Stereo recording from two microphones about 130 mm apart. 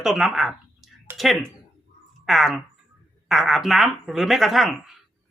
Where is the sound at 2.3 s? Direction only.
Centre (ahead or behind).